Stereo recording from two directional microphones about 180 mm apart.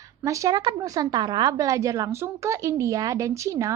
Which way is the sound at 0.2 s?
15° right (ahead or behind).